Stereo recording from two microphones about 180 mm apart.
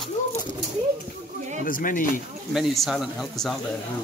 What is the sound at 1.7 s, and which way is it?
Speech, 50° left (ahead or behind).